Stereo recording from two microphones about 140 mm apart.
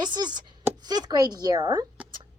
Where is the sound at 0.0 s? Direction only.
30° right (ahead or behind).